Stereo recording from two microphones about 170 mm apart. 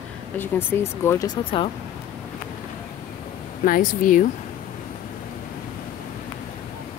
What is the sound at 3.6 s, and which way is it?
Speech, 55° left (ahead or behind).